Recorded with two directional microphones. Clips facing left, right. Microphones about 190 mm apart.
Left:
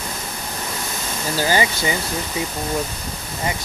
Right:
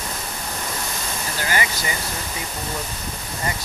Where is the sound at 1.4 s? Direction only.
30° left (ahead or behind).